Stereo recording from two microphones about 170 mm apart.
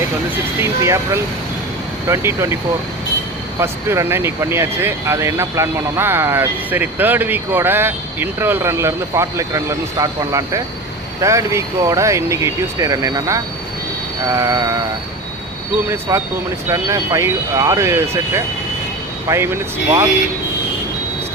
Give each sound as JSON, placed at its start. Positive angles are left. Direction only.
{"t": 0.6, "sound": "speech", "side_deg": -15}
{"t": 3.6, "sound": "speech", "side_deg": -15}
{"t": 14.3, "sound": "a sound", "side_deg": -20}
{"t": 15.9, "sound": "speech", "side_deg": -15}